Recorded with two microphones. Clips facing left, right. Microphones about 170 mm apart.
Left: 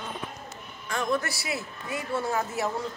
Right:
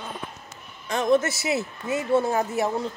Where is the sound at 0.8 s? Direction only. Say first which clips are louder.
Right 7 dB; 20° right (ahead or behind).